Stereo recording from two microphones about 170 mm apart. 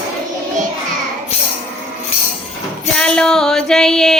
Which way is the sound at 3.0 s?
5° left (ahead or behind).